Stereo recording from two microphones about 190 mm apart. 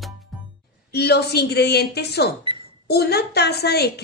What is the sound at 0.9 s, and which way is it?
A woman's voice, 60° left (ahead or behind).